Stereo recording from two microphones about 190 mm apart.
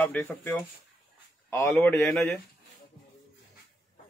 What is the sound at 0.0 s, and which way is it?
Speech, 10° left (ahead or behind).